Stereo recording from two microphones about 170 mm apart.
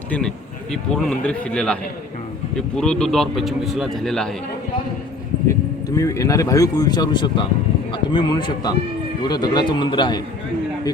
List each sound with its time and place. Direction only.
0.1 s speech: 5° left (ahead or behind)
5.5 s a man's voice: 20° left (ahead or behind)